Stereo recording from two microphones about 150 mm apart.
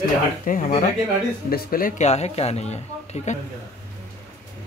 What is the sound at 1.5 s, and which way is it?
Speech, 75° left (ahead or behind).